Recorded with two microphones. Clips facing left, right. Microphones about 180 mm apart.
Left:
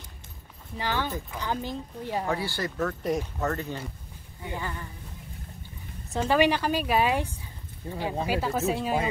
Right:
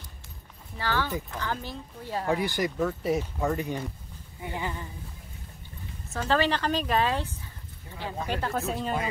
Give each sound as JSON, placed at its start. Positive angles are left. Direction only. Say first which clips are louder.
{"t": 0.7, "sound": "a woman's voice", "louder": "even", "side_deg": 15}
{"t": 2.2, "sound": "speech", "louder": "right 3 dB", "side_deg": -15}
{"t": 6.1, "sound": "a woman's voice", "louder": "left 3 dB", "side_deg": 15}
{"t": 7.8, "sound": "speech", "louder": "left 11 dB", "side_deg": 35}
{"t": 8.3, "sound": "speech", "louder": "left 2 dB", "side_deg": 5}